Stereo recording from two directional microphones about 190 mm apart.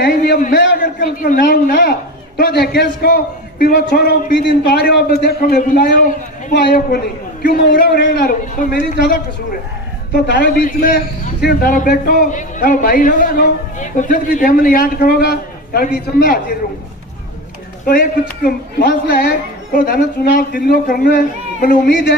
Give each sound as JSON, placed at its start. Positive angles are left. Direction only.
{"t": 0.0, "sound": "a sound", "side_deg": 55}
{"t": 0.6, "sound": "a man's voice", "side_deg": 60}
{"t": 17.8, "sound": "a man's voice", "side_deg": 50}